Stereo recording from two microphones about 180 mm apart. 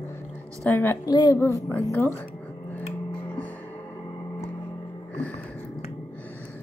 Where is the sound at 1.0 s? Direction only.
20° left (ahead or behind).